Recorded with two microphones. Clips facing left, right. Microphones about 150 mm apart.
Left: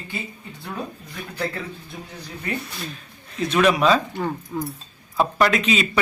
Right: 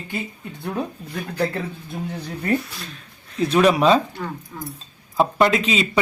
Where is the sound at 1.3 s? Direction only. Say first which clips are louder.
Right 4 dB; 30° right (ahead or behind).